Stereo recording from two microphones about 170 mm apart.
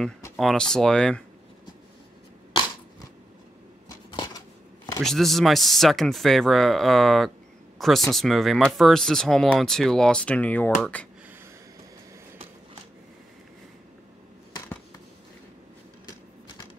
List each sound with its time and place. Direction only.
0.4 s speech: 5° left (ahead or behind)
4.1 s a sound: 25° left (ahead or behind)
5.0 s speech: centre (ahead or behind)